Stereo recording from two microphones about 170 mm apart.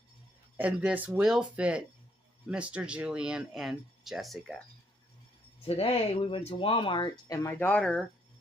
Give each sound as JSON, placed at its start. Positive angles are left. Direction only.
{"t": 0.6, "sound": "speech", "side_deg": -5}
{"t": 5.6, "sound": "speech", "side_deg": 35}